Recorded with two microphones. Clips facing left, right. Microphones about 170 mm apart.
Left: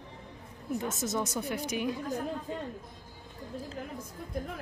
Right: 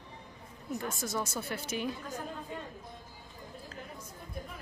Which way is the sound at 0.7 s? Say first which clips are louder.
Left 4 dB; 20° left (ahead or behind).